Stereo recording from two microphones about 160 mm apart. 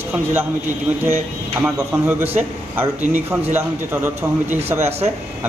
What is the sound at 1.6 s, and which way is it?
Speech, 15° right (ahead or behind).